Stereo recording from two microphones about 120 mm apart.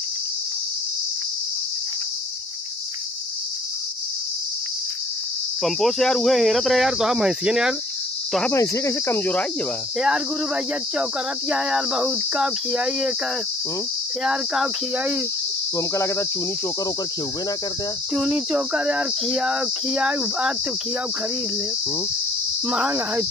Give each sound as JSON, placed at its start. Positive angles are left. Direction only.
{"t": 5.6, "sound": "cricket", "side_deg": 0}
{"t": 8.5, "sound": "speech", "side_deg": 25}
{"t": 9.9, "sound": "cricket", "side_deg": -5}
{"t": 14.2, "sound": "cricket", "side_deg": -5}
{"t": 15.9, "sound": "cricket", "side_deg": 25}
{"t": 18.1, "sound": "cricket", "side_deg": 0}
{"t": 22.7, "sound": "cricket", "side_deg": -10}